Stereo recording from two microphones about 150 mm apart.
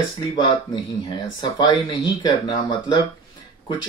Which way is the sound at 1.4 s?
30° left (ahead or behind).